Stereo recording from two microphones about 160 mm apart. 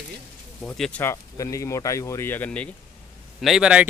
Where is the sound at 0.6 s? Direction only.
5° left (ahead or behind).